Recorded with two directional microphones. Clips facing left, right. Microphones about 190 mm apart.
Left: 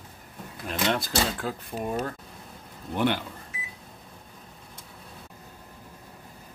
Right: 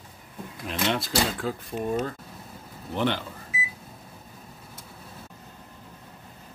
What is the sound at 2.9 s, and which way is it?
Speech, 10° left (ahead or behind).